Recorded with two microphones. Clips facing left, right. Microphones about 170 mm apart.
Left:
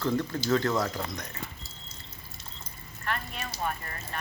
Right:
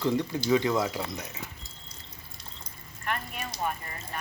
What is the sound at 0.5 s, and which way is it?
Speech, 5° right (ahead or behind).